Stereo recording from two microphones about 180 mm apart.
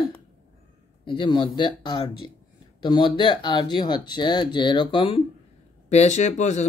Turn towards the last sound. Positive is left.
turn(degrees=40)  # may be behind; listen again after turning